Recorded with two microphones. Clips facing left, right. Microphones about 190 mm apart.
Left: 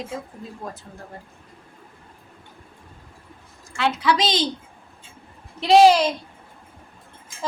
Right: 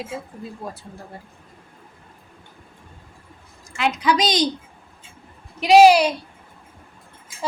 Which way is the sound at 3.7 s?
15° right (ahead or behind).